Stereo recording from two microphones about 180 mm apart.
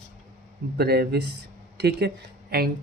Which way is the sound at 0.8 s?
60° right (ahead or behind).